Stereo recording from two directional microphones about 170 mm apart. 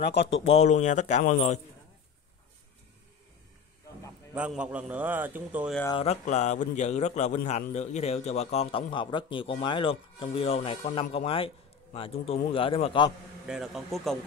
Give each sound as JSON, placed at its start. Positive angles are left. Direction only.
{"t": 0.6, "sound": "a man's voice", "side_deg": 45}
{"t": 4.3, "sound": "a man's voice", "side_deg": -5}
{"t": 5.9, "sound": "a man's voice", "side_deg": 40}
{"t": 13.5, "sound": "a man's voice", "side_deg": 0}